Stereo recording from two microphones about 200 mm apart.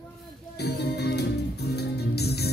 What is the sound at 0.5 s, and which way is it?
Music, 55° left (ahead or behind).